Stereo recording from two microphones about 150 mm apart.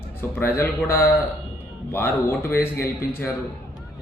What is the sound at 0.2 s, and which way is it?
A man's voice, 15° left (ahead or behind).